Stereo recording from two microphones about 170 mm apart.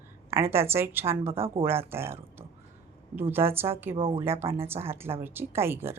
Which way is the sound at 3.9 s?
30° right (ahead or behind).